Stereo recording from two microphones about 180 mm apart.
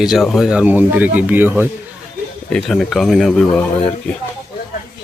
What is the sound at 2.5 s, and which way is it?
Speech, centre (ahead or behind).